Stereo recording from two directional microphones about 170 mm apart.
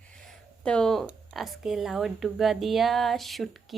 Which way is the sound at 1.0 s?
Centre (ahead or behind).